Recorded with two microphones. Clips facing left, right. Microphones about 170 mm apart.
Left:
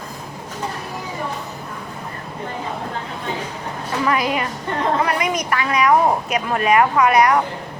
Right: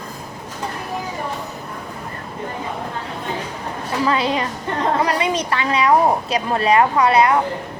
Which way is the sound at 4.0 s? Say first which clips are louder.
Right 1 dB; 30° right (ahead or behind).